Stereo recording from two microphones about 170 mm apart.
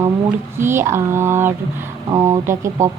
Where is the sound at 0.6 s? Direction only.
15° right (ahead or behind).